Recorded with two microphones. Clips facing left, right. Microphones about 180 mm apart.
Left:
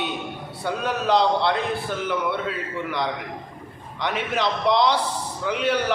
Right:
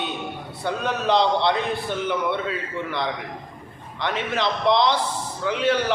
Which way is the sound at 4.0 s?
10° left (ahead or behind).